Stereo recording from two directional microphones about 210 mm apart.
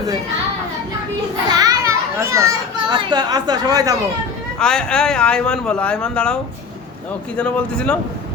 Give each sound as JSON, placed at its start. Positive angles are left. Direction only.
{"t": 1.5, "sound": "a child's voice", "side_deg": -15}
{"t": 4.6, "sound": "speech", "side_deg": 5}
{"t": 7.3, "sound": "speech", "side_deg": 5}